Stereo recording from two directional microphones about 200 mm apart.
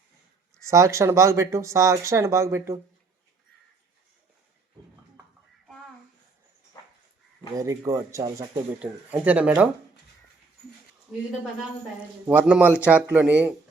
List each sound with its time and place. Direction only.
0.6 s speech: 15° right (ahead or behind)
7.5 s speech: 15° right (ahead or behind)
8.8 s speech: 5° right (ahead or behind)
12.3 s speech: 5° right (ahead or behind)